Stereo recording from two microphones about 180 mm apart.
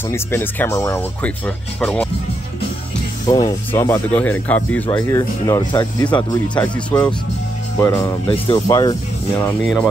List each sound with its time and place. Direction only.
0.1 s speech: 10° left (ahead or behind)
3.3 s speech: 20° left (ahead or behind)
6.1 s speech: 25° left (ahead or behind)
7.8 s speech: 15° left (ahead or behind)
9.4 s speech: 10° left (ahead or behind)